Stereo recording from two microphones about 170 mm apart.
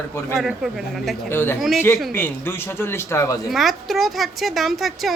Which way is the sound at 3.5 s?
Centre (ahead or behind).